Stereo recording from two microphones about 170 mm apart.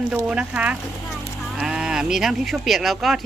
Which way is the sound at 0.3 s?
5° right (ahead or behind).